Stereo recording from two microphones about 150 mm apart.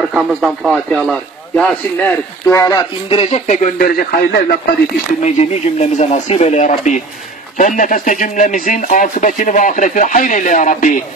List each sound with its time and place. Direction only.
0.1 s speech: 5° right (ahead or behind)
2.4 s speech: 25° left (ahead or behind)
3.1 s speech: 50° left (ahead or behind); by 4.6 s 80° left
5.2 s speech: 50° left (ahead or behind)